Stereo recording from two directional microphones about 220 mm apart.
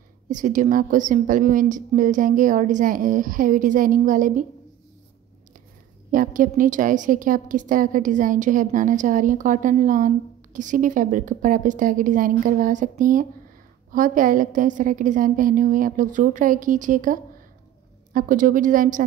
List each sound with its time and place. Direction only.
0.3 s a woman's voice: 35° right (ahead or behind)
6.1 s a woman's voice: 35° right (ahead or behind)